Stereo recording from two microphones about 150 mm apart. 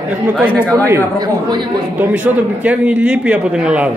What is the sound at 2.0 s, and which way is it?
A man's voice, 10° right (ahead or behind).